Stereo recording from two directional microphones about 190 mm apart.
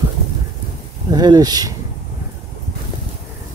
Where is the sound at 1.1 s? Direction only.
20° right (ahead or behind).